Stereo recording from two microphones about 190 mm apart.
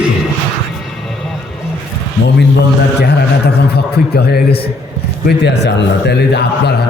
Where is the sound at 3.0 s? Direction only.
60° left (ahead or behind).